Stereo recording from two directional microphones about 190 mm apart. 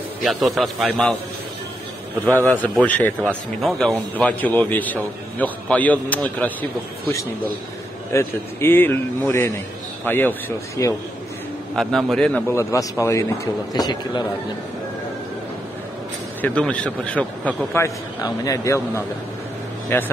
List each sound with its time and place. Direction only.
0.2 s a man's voice: centre (ahead or behind)
2.2 s a man's voice: 10° left (ahead or behind)
10.0 s a man's voice: 10° left (ahead or behind)
11.7 s a man's voice: centre (ahead or behind); by 14.2 s 20° left (ahead or behind)
16.3 s a man's voice: 5° left (ahead or behind)